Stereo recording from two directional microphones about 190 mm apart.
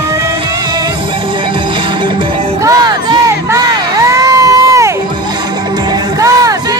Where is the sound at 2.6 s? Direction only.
20° right (ahead or behind).